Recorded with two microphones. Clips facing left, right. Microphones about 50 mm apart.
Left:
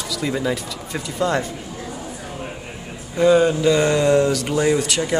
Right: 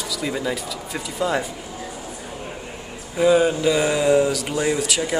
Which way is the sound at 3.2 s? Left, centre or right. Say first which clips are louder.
Left 2 dB; centre.